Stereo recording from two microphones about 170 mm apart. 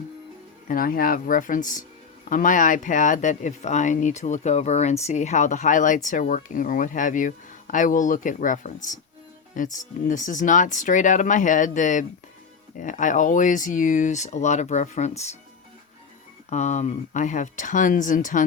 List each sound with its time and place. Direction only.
0.7 s speech: 55° left (ahead or behind); by 15.4 s 40° left (ahead or behind)
16.5 s speech: 40° left (ahead or behind)